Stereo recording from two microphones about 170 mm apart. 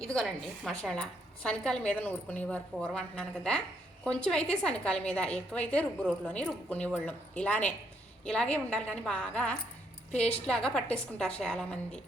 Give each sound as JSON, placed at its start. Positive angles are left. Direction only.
{"t": 0.0, "sound": "a woman's voice", "side_deg": 5}
{"t": 10.1, "sound": "a woman's voice", "side_deg": 40}
{"t": 10.4, "sound": "a woman's voice", "side_deg": 5}